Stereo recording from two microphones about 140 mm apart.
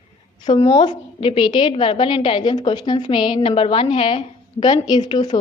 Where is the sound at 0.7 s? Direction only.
30° left (ahead or behind).